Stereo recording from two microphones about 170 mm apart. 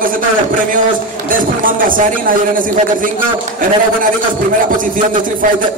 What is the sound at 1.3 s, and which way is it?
A man's voice, 55° right (ahead or behind).